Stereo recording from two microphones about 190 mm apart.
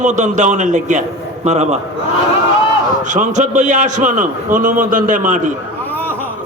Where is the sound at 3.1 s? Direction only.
40° right (ahead or behind).